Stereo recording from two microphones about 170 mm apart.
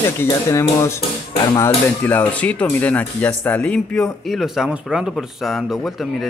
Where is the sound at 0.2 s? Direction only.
20° left (ahead or behind).